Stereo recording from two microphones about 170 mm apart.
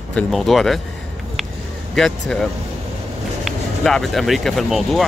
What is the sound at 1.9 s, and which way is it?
Speech, centre (ahead or behind).